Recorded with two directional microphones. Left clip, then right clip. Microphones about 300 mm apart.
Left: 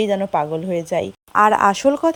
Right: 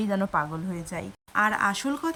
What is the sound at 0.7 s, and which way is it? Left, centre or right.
Speech, centre.